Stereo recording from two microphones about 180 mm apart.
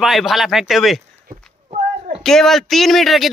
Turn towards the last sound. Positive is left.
turn(degrees=0)  # may be behind; listen again after turning